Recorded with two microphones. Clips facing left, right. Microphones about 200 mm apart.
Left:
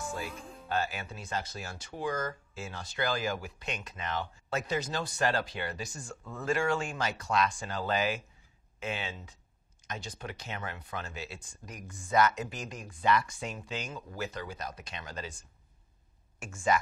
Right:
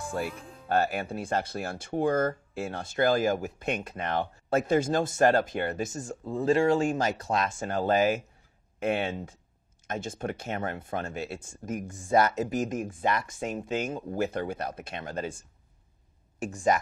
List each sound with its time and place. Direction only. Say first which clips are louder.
0.1 s speech: right 6 dB; 60° right (ahead or behind)
8.7 s speech: right 9 dB; 55° right (ahead or behind)
16.3 s speech: right 5 dB; 35° right (ahead or behind)